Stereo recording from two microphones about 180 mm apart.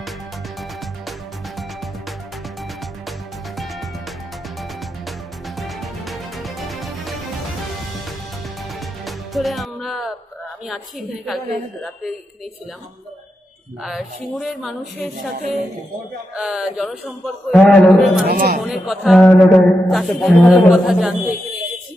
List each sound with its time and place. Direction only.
3.1 s music: centre (ahead or behind)
5.6 s music: centre (ahead or behind)
9.0 s music: centre (ahead or behind)
10.7 s a man's voice: centre (ahead or behind)
13.8 s a man's voice: centre (ahead or behind)
16.3 s a man's voice: 5° right (ahead or behind)
18.2 s speech: 55° right (ahead or behind)
18.6 s a man's voice: centre (ahead or behind)